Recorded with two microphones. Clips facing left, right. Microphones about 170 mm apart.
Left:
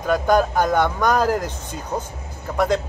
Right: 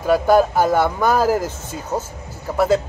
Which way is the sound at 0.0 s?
5° right (ahead or behind).